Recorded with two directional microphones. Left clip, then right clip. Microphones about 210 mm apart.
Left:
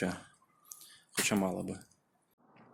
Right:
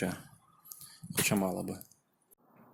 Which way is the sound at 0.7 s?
5° right (ahead or behind).